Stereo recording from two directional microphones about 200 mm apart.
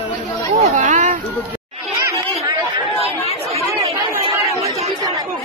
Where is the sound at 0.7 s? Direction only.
35° right (ahead or behind).